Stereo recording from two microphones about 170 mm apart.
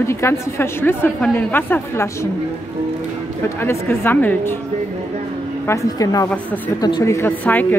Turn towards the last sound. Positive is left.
turn(degrees=10)  # may be behind; listen again after turning